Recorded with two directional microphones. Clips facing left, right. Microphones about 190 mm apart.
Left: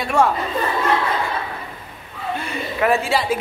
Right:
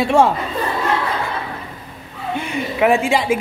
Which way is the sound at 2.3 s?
15° right (ahead or behind).